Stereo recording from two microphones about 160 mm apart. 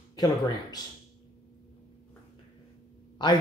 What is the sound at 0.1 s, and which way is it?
Speech, 25° left (ahead or behind).